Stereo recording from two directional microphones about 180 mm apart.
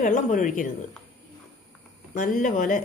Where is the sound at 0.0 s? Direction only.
45° left (ahead or behind).